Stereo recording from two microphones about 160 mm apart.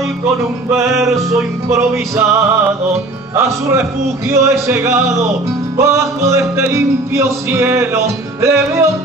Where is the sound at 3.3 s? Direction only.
15° right (ahead or behind).